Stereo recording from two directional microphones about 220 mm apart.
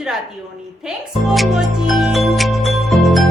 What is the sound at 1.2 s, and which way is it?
Music, centre (ahead or behind).